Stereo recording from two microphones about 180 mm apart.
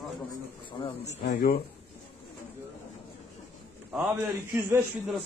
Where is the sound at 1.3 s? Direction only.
55° left (ahead or behind).